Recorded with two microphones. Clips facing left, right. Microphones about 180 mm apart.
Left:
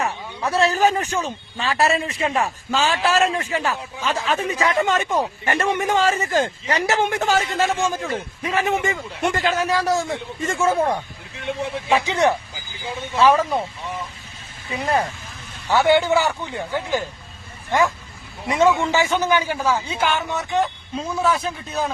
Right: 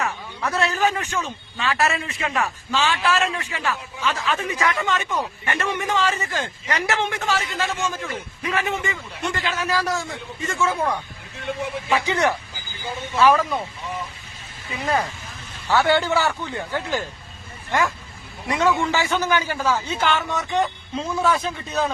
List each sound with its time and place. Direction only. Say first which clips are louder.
0.0 s a man's voice: left 2 dB; 30° left (ahead or behind)
8.1 s a man's voice: left 3 dB; 30° left (ahead or behind)
11.9 s a man's voice: left 3 dB; 20° left (ahead or behind)
15.7 s a man's voice: left 3 dB; 15° left (ahead or behind)